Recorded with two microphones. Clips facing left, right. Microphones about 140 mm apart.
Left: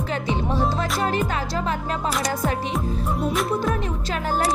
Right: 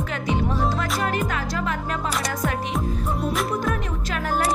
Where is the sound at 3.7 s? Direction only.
30° left (ahead or behind).